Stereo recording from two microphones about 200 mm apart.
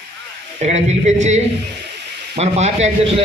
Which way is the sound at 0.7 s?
35° right (ahead or behind).